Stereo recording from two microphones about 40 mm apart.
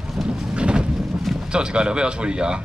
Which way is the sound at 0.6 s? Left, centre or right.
Right.